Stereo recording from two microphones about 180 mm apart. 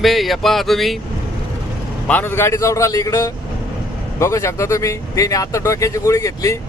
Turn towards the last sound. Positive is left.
turn(degrees=15)  # may be behind; listen again after turning